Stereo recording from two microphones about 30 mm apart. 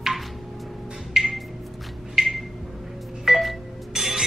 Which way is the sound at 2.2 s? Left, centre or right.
Right.